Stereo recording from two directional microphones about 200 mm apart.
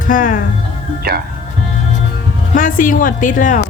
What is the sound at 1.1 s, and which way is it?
Speech, 50° right (ahead or behind).